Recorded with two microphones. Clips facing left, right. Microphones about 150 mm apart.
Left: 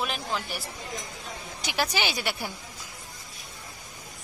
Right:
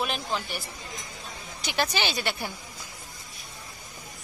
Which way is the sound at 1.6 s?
10° left (ahead or behind).